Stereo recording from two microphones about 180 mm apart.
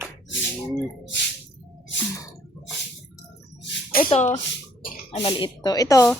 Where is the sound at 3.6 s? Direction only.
55° left (ahead or behind).